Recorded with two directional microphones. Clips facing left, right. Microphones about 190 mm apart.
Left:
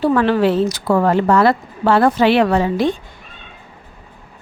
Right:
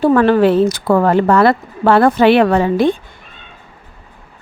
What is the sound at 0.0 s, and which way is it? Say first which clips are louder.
Speech: right 4 dB; 50° right (ahead or behind).